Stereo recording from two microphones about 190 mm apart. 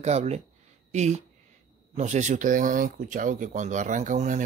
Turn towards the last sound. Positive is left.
turn(degrees=-40)  # may be behind; listen again after turning